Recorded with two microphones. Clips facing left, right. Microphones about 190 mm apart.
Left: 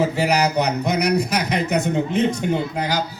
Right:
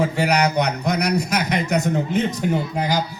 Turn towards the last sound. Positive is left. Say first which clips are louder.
# right 1 dB
turn(degrees=-10)  # may be behind; listen again after turning